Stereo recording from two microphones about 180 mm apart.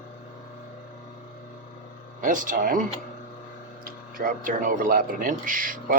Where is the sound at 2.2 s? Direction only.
45° right (ahead or behind).